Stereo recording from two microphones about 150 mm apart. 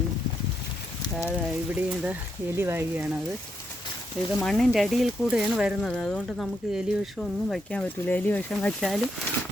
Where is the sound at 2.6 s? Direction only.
15° right (ahead or behind).